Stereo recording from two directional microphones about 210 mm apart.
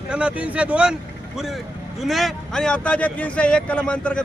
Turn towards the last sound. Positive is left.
turn(degrees=5)  # may be behind; listen again after turning